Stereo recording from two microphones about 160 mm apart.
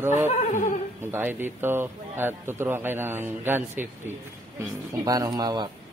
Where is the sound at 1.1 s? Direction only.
15° right (ahead or behind).